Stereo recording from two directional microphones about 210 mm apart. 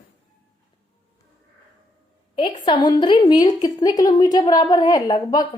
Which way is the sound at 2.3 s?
25° left (ahead or behind).